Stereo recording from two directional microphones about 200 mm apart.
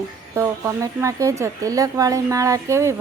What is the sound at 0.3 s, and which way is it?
Speech, 15° right (ahead or behind).